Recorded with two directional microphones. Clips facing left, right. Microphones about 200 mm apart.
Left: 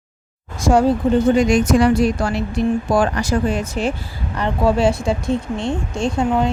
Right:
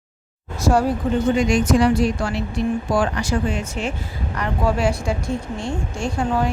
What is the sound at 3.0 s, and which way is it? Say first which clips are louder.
Speech: left 3 dB; 40° left (ahead or behind).